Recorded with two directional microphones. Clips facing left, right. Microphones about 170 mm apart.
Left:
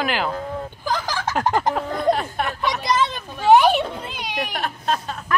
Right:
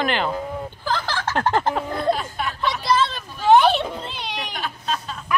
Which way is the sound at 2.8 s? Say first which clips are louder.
Right 2 dB; 15° left (ahead or behind).